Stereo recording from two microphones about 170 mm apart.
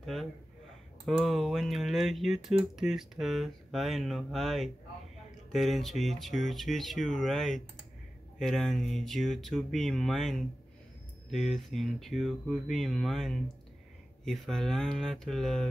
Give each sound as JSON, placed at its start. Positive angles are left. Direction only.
{"t": 0.0, "sound": "speech", "side_deg": 0}